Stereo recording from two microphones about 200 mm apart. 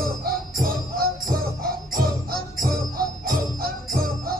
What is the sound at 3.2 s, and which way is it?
Jingle bell, 45° right (ahead or behind).